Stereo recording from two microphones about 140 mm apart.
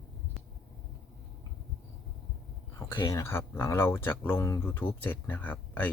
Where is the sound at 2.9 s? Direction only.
30° left (ahead or behind).